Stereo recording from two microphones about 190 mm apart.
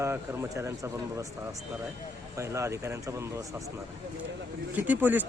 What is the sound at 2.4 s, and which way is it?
Speech, 15° right (ahead or behind).